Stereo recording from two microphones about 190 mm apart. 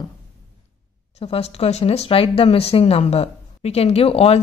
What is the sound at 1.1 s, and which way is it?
Speech, 30° left (ahead or behind).